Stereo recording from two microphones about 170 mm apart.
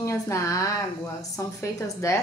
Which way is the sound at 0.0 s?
15° left (ahead or behind).